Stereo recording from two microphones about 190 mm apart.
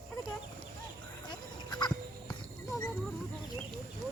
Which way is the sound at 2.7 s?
10° left (ahead or behind).